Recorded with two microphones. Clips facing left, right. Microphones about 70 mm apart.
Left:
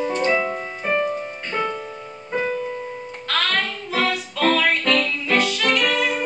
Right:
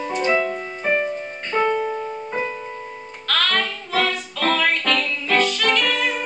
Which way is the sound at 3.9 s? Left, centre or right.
Centre.